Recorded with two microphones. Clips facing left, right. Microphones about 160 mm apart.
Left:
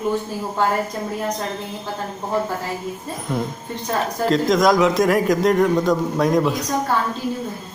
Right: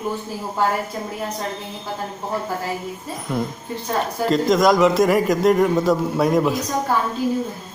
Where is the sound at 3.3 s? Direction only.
5° right (ahead or behind).